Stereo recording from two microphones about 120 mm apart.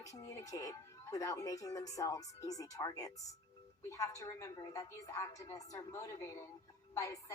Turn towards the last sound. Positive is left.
turn(degrees=25)  # may be behind; listen again after turning